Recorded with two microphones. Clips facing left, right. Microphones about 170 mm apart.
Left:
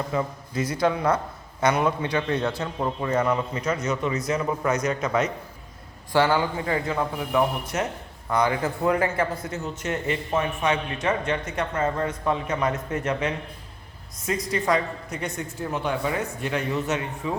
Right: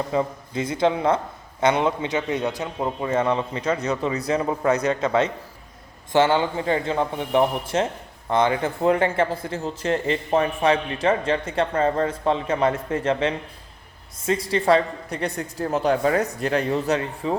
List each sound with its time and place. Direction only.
0.1 s a woman's voice: 25° right (ahead or behind)